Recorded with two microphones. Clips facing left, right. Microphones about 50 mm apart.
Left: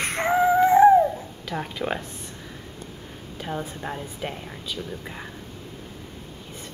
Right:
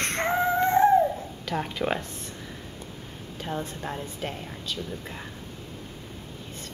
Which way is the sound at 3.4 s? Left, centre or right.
Centre.